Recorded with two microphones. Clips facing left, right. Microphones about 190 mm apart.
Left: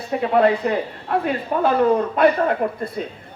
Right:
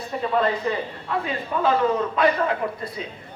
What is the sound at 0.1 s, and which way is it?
A man's voice, 65° left (ahead or behind).